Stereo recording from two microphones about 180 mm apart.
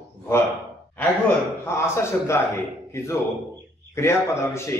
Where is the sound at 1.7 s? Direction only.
15° left (ahead or behind).